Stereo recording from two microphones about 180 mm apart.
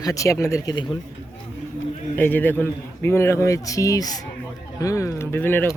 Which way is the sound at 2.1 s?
10° left (ahead or behind).